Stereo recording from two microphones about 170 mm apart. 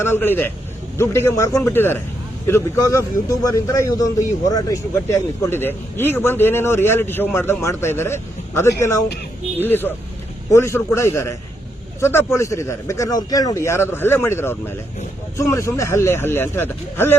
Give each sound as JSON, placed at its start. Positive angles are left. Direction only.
{"t": 0.0, "sound": "a man's voice", "side_deg": 10}